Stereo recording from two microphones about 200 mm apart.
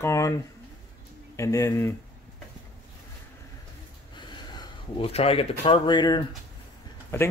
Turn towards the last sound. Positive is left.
turn(degrees=15)  # may be behind; listen again after turning